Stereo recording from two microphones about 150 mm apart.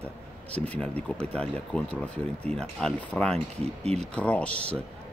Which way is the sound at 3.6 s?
45° right (ahead or behind).